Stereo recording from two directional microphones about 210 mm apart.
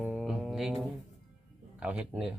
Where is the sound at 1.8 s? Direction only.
5° right (ahead or behind).